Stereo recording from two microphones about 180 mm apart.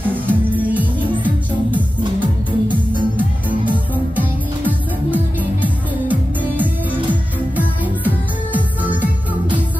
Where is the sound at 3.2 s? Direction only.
10° right (ahead or behind).